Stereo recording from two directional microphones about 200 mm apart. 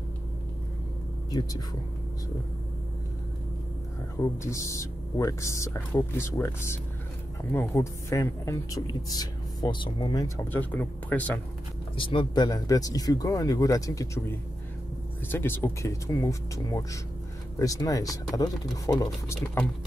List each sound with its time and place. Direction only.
4.2 s speech: 15° left (ahead or behind)
12.0 s speech: 25° left (ahead or behind)
15.3 s speech: 10° left (ahead or behind)